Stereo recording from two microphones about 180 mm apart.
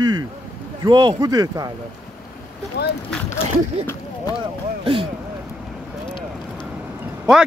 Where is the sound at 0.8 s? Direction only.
25° right (ahead or behind).